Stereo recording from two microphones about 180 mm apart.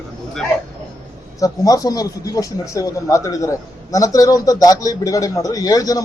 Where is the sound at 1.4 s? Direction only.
20° left (ahead or behind).